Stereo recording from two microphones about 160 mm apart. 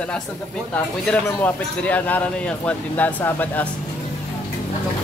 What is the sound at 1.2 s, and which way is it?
Speech, 10° left (ahead or behind).